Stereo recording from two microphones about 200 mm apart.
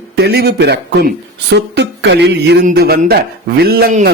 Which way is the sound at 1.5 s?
55° right (ahead or behind).